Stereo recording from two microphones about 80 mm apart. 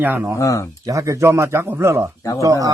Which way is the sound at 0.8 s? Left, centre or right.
Right.